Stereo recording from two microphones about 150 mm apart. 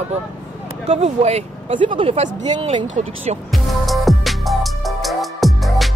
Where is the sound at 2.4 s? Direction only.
30° right (ahead or behind).